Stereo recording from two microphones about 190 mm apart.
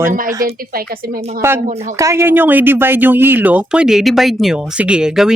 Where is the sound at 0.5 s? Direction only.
50° right (ahead or behind).